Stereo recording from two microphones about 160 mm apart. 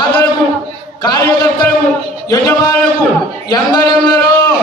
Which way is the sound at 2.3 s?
25° left (ahead or behind).